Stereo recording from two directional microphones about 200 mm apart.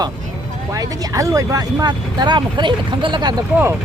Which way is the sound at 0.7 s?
15° right (ahead or behind).